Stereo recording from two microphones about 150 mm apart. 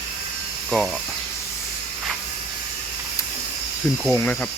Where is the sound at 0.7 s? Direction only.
5° left (ahead or behind).